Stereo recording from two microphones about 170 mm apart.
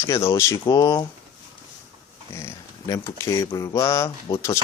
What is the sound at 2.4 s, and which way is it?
Speech, 20° left (ahead or behind).